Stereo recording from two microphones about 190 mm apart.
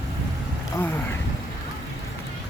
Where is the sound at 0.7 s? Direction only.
10° left (ahead or behind).